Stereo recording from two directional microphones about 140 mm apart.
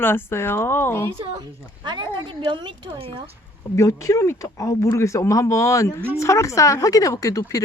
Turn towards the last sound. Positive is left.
turn(degrees=25)  # may be behind; listen again after turning